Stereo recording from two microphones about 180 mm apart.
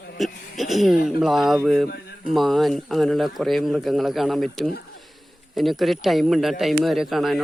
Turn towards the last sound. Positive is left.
turn(degrees=0)  # may be behind; listen again after turning